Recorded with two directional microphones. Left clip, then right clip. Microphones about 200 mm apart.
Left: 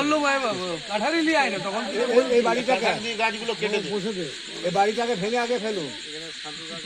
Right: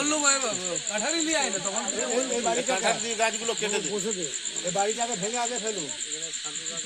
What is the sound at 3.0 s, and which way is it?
Speech, 50° right (ahead or behind).